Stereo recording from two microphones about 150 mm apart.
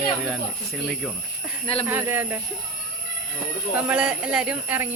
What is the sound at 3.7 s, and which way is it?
A woman's voice, 10° right (ahead or behind).